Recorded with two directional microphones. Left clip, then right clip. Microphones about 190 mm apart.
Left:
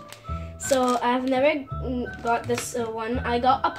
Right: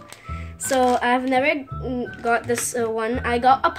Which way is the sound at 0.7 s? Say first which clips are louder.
Right 4 dB; 35° right (ahead or behind).